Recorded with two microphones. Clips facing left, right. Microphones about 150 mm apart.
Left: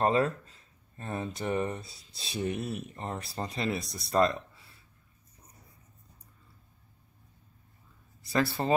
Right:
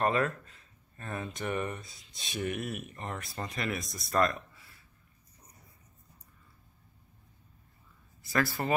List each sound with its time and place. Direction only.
0.0 s speech: 30° left (ahead or behind)
8.3 s speech: 25° left (ahead or behind)